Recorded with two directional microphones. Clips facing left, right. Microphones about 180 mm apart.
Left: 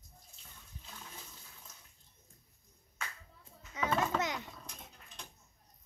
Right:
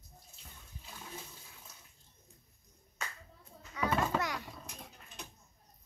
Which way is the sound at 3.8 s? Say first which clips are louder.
Even; 20° left (ahead or behind).